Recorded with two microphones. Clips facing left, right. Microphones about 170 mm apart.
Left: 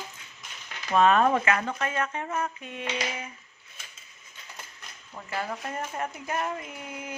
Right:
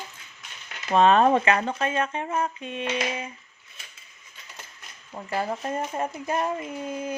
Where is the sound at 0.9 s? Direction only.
30° right (ahead or behind).